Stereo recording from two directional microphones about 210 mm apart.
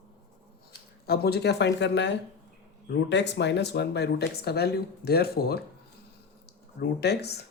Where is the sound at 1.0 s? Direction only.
50° left (ahead or behind).